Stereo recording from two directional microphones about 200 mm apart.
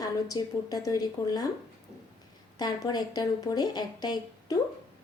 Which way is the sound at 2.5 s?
20° left (ahead or behind).